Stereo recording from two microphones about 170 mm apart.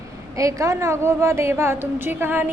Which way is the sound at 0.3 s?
20° right (ahead or behind).